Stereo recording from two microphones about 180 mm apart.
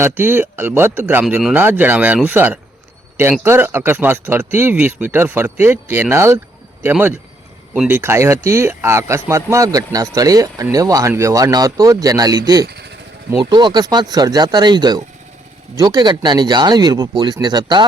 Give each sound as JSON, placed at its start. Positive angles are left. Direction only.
{"t": 0.0, "sound": "speech", "side_deg": -10}
{"t": 1.2, "sound": "a man's voice", "side_deg": 0}
{"t": 12.6, "sound": "speech", "side_deg": -65}
{"t": 13.4, "sound": "a man's voice", "side_deg": -25}